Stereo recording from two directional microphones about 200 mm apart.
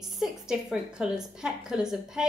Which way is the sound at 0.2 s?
5° right (ahead or behind).